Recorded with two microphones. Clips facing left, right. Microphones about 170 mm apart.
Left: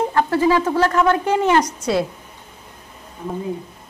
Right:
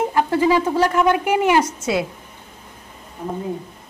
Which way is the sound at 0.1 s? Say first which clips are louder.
Even; 15° right (ahead or behind).